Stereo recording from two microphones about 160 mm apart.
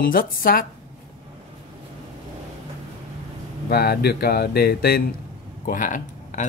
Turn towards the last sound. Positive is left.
turn(degrees=55)  # may be behind; listen again after turning